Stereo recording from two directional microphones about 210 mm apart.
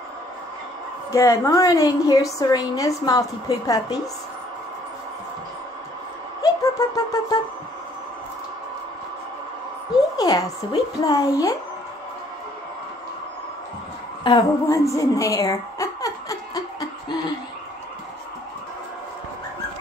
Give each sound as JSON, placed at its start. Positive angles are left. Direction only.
{"t": 1.1, "sound": "a woman's voice", "side_deg": 15}
{"t": 6.4, "sound": "music", "side_deg": 15}
{"t": 10.1, "sound": "a woman's voice", "side_deg": 20}
{"t": 14.2, "sound": "a sound", "side_deg": 20}